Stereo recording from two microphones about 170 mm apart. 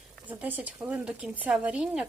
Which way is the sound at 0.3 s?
10° right (ahead or behind).